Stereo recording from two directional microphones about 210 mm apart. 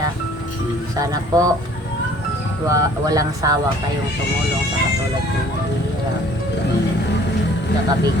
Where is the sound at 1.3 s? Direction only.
15° right (ahead or behind).